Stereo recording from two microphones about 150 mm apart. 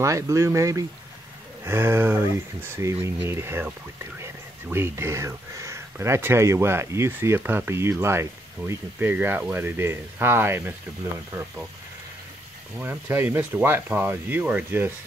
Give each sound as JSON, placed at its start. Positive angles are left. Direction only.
{"t": 0.0, "sound": "speech", "side_deg": -20}
{"t": 12.7, "sound": "speech", "side_deg": -15}